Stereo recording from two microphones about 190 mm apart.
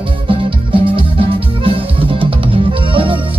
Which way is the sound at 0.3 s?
25° right (ahead or behind).